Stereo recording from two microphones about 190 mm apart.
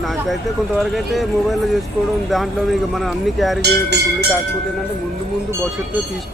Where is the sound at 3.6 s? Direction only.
60° right (ahead or behind).